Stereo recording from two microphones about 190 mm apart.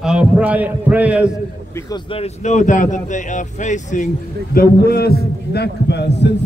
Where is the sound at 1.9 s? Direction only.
30° left (ahead or behind).